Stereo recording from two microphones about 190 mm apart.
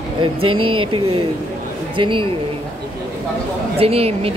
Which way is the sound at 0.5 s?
25° right (ahead or behind).